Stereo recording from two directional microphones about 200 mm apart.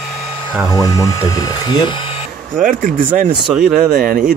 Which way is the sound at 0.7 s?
15° left (ahead or behind).